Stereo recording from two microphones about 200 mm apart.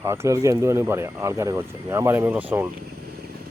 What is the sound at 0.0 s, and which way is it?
Speech, 15° right (ahead or behind).